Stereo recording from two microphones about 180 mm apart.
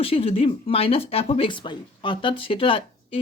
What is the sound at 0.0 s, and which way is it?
Speech, 30° left (ahead or behind).